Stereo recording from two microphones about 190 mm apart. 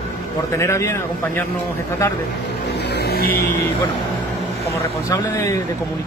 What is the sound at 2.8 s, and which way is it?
Vehicle, 60° left (ahead or behind).